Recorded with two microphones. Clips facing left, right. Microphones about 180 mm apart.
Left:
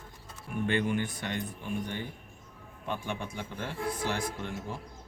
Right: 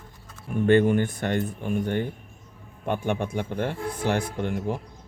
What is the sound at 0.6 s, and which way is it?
Speech, 50° right (ahead or behind).